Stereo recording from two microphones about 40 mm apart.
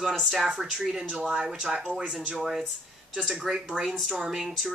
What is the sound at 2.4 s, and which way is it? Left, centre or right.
Speech, centre.